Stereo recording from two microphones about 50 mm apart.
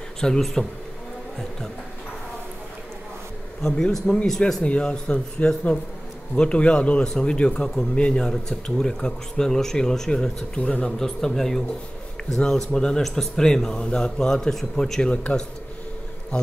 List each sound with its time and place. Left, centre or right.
0.2 s speech: centre
3.6 s speech: centre
8.2 s speech: centre
10.6 s speech: left
10.9 s speech: centre